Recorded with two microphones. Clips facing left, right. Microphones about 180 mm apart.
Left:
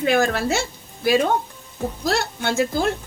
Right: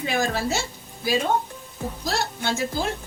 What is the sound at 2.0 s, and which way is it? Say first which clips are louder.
Speech: left 4 dB; 60° left (ahead or behind).